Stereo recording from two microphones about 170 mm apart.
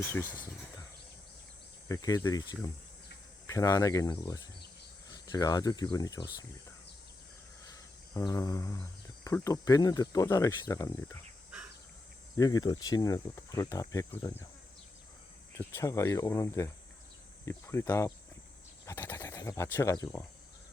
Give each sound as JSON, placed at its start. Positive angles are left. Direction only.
{"t": 0.0, "sound": "speech", "side_deg": 10}
{"t": 1.9, "sound": "speech", "side_deg": 20}
{"t": 7.6, "sound": "speech", "side_deg": 20}
{"t": 12.4, "sound": "speech", "side_deg": 25}
{"t": 15.5, "sound": "speech", "side_deg": 20}